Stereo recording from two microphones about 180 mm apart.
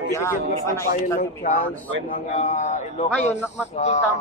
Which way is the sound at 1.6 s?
10° left (ahead or behind).